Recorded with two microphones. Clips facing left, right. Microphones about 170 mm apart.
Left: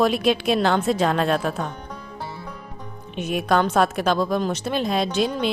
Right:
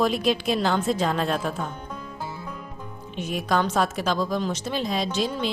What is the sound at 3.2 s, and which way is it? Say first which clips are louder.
A woman's voice: left 4 dB; 65° left (ahead or behind).